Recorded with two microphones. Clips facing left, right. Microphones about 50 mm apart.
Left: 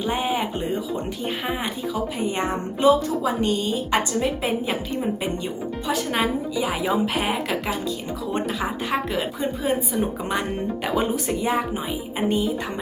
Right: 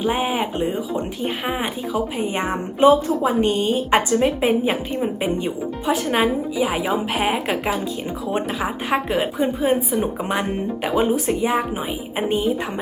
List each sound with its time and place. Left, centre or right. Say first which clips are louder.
0.0 s a woman's voice: right 3 dB; centre
2.8 s a woman's voice: right 4 dB; right
4.4 s a woman's voice: right 5 dB; right